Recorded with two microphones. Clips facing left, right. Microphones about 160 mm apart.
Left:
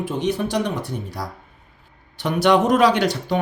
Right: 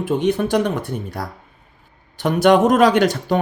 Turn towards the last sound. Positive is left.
turn(degrees=-50)  # may be behind; listen again after turning